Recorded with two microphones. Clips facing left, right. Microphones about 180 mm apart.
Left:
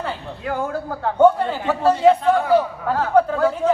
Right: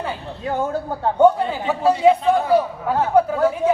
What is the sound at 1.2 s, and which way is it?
A man's voice, 15° right (ahead or behind).